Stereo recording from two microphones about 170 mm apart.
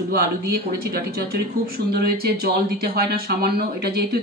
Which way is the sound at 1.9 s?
70° right (ahead or behind).